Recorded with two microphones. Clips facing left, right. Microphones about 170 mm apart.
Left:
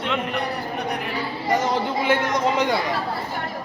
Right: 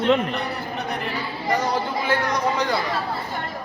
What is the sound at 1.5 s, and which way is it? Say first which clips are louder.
Speech: left 1 dB; 20° left (ahead or behind).